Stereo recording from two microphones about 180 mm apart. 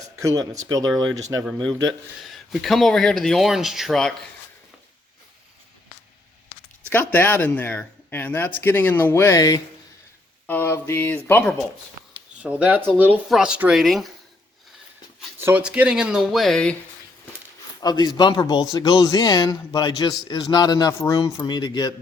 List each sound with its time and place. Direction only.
0.2 s speech: 20° right (ahead or behind)
1.9 s speech: centre (ahead or behind)
6.9 s speech: 10° left (ahead or behind)
12.4 s speech: 5° right (ahead or behind)
15.4 s speech: 10° right (ahead or behind)
17.7 s speech: 20° left (ahead or behind)